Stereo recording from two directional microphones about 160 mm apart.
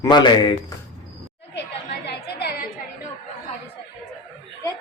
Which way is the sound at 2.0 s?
90° left.